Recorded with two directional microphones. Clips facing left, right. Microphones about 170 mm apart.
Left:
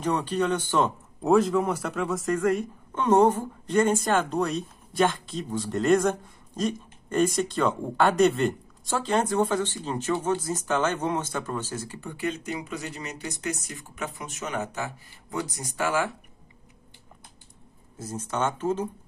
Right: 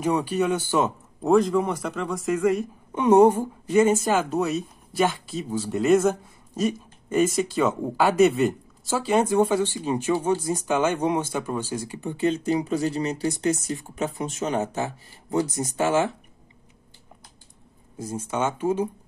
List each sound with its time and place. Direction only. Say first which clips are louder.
0.0 s a woman's voice: right 3 dB; 10° right (ahead or behind); by 16.1 s 25° right (ahead or behind)
17.9 s a woman's voice: right 3 dB; 10° right (ahead or behind)